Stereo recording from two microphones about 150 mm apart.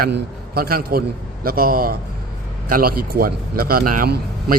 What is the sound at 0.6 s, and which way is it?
A man's voice, 80° right.